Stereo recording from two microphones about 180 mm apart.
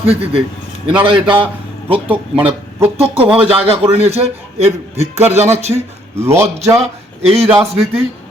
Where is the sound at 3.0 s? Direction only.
30° right (ahead or behind).